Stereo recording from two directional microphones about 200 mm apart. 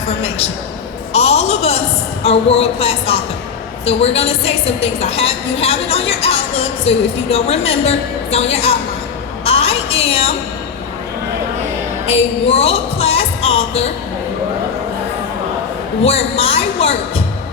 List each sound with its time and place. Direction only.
0.2 s a man's voice: 30° left (ahead or behind)
9.4 s a sound: 30° left (ahead or behind)
12.0 s music: 30° left (ahead or behind)
16.0 s a woman's voice: 30° left (ahead or behind)